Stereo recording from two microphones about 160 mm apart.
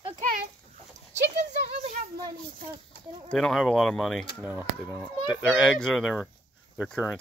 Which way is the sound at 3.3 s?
5° left (ahead or behind).